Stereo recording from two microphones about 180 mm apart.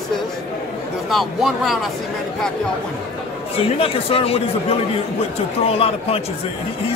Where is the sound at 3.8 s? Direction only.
30° left (ahead or behind).